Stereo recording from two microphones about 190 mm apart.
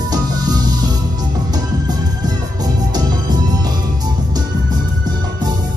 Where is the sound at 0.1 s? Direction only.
20° right (ahead or behind).